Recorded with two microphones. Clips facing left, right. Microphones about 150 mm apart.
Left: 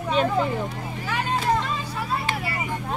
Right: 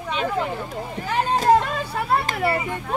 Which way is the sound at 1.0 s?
40° right (ahead or behind).